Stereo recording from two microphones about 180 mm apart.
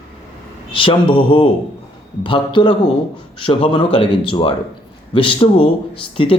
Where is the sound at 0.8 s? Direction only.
30° left (ahead or behind).